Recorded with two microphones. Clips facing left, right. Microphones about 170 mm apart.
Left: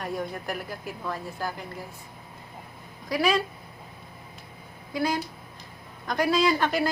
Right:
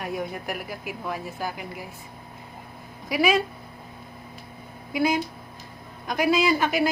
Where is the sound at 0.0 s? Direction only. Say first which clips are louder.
Right 1 dB; 5° right (ahead or behind).